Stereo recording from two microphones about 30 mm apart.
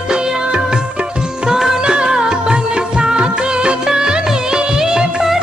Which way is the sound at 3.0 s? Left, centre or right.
Right.